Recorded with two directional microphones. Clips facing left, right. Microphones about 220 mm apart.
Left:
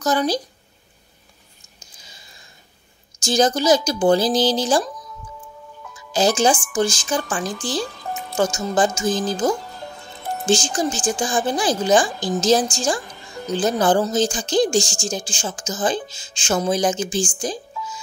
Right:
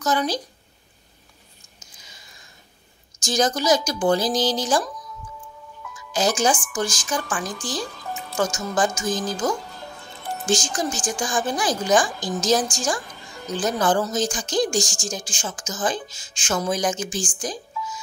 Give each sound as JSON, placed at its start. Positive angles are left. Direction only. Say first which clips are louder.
{"t": 0.0, "sound": "a woman's voice", "louder": "left 3 dB", "side_deg": 35}
{"t": 1.8, "sound": "a sound", "louder": "left 2 dB", "side_deg": 30}
{"t": 3.2, "sound": "a woman's voice", "louder": "left 4 dB", "side_deg": 30}